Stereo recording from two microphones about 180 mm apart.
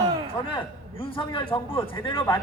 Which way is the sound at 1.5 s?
25° left (ahead or behind).